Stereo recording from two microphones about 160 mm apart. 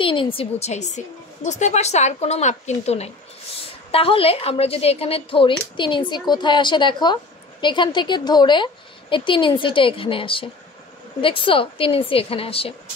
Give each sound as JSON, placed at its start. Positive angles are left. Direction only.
{"t": 0.0, "sound": "a woman's voice", "side_deg": 30}